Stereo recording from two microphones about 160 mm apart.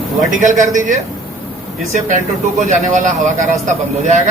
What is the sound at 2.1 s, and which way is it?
Speech, 50° right (ahead or behind).